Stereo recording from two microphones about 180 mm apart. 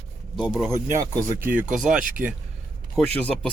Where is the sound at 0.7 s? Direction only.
15° right (ahead or behind).